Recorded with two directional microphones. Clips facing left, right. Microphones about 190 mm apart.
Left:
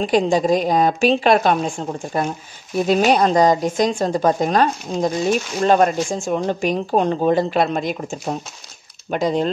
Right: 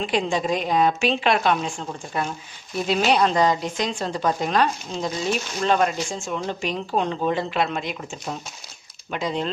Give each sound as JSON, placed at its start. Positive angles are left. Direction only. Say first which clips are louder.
{"t": 0.0, "sound": "a woman's voice", "louder": "left 7 dB", "side_deg": 40}